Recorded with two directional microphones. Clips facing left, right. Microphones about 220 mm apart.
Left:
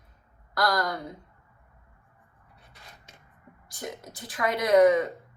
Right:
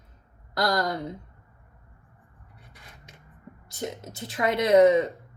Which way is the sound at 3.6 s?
25° right (ahead or behind).